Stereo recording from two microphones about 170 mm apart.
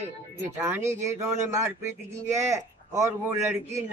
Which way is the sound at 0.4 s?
15° right (ahead or behind).